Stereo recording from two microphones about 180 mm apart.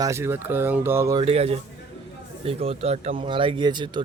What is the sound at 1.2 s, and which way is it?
Speech, 35° right (ahead or behind).